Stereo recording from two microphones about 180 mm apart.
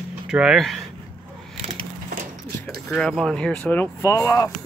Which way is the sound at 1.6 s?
35° right (ahead or behind).